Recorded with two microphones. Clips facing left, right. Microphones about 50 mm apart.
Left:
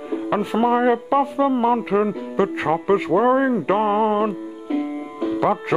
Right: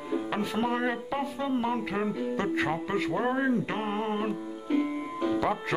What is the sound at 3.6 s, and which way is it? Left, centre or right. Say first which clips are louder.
Speech: left 12 dB; left.